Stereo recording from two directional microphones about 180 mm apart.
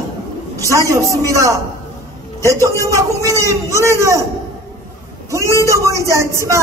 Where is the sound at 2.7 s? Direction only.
15° left (ahead or behind).